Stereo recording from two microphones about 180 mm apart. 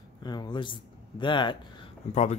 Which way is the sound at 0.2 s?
25° left (ahead or behind).